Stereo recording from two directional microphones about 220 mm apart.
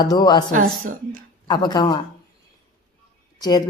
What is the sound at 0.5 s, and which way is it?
Speech, 35° right (ahead or behind).